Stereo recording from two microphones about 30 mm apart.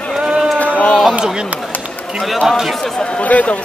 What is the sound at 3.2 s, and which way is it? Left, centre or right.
Speech, left.